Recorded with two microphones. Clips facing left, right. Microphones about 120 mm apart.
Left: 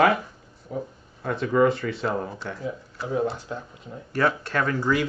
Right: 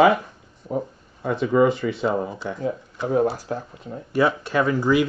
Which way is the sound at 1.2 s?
5° right (ahead or behind).